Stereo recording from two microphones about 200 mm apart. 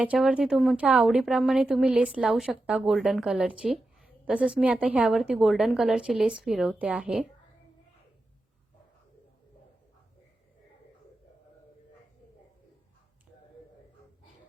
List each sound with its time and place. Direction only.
0.0 s speech: 5° right (ahead or behind)